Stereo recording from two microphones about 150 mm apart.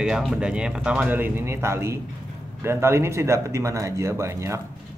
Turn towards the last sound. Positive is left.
turn(degrees=-20)  # may be behind; listen again after turning